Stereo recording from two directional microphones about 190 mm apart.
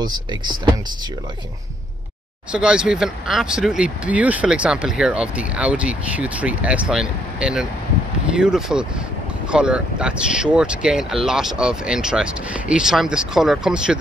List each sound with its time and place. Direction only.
0.0 s speech: 20° right (ahead or behind)
2.5 s speech: 5° right (ahead or behind)